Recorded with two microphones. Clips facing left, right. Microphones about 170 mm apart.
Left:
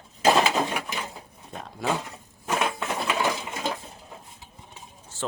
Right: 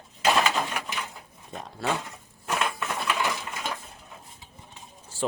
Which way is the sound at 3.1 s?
30° left (ahead or behind).